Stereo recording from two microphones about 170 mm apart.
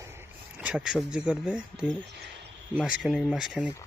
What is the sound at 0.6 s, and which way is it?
Speech, 5° right (ahead or behind).